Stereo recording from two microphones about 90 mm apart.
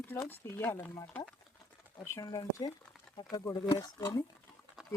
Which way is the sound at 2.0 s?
30° left (ahead or behind).